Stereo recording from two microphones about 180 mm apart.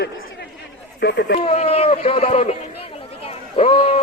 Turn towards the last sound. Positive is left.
turn(degrees=30)  # may be behind; listen again after turning